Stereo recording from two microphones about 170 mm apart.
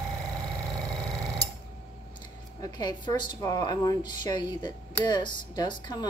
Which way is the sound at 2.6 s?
25° left (ahead or behind).